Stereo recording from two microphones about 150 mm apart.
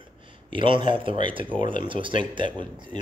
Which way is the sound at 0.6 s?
35° right (ahead or behind).